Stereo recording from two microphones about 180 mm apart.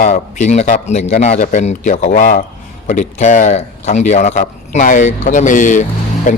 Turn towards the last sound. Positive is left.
turn(degrees=45)  # may be behind; listen again after turning